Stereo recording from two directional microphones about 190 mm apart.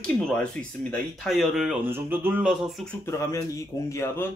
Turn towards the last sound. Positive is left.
turn(degrees=10)  # may be behind; listen again after turning